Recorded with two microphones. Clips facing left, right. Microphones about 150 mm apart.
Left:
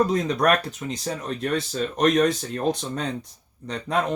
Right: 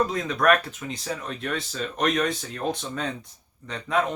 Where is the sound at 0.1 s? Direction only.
35° left (ahead or behind).